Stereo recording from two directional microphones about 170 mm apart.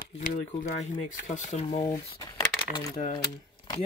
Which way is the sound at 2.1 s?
20° left (ahead or behind).